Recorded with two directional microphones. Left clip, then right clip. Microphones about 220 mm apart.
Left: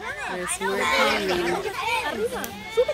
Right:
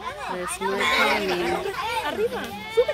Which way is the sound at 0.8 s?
35° right (ahead or behind).